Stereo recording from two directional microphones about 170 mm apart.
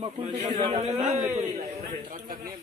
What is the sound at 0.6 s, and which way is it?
Speech, 35° right (ahead or behind).